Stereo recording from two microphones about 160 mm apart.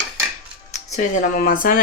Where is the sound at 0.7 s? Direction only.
45° left (ahead or behind).